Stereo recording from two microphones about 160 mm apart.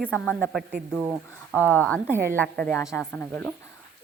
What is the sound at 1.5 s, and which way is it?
Speech, 10° left (ahead or behind).